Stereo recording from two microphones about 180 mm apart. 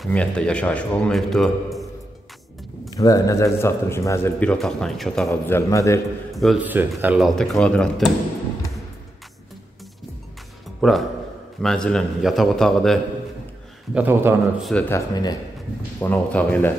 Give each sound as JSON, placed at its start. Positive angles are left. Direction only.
{"t": 0.0, "sound": "a man's voice", "side_deg": 5}
{"t": 2.9, "sound": "a man's voice", "side_deg": 20}
{"t": 5.3, "sound": "a man's voice", "side_deg": 15}
{"t": 6.3, "sound": "a man's voice", "side_deg": 0}
{"t": 7.3, "sound": "a man's voice", "side_deg": 0}
{"t": 10.8, "sound": "a man's voice", "side_deg": 0}
{"t": 13.9, "sound": "speech", "side_deg": -10}
{"t": 14.6, "sound": "a man's voice", "side_deg": 5}